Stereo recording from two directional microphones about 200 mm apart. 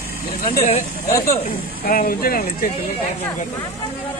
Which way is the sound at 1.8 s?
45° left (ahead or behind).